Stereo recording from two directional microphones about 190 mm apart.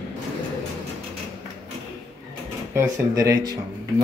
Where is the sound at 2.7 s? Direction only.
15° right (ahead or behind).